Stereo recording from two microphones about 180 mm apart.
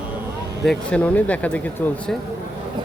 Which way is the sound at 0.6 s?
5° left (ahead or behind).